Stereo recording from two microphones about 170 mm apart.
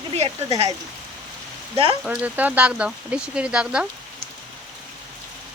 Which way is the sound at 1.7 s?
35° right (ahead or behind).